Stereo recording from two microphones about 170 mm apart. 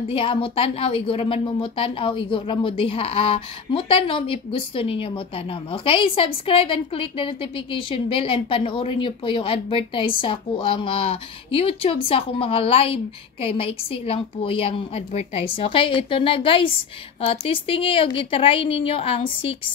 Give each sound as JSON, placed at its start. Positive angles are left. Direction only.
{"t": 0.1, "sound": "speech", "side_deg": 30}